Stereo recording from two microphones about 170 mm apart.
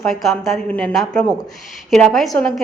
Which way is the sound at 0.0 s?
Centre (ahead or behind).